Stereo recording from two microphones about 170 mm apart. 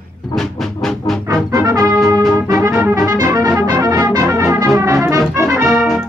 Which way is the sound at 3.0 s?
20° right (ahead or behind).